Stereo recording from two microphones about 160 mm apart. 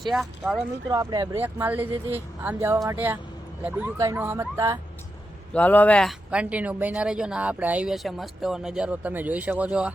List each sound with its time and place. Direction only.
0.0 s speech: centre (ahead or behind)
0.9 s speech: 25° right (ahead or behind)
5.5 s speech: 10° left (ahead or behind)
6.3 s speech: 10° right (ahead or behind)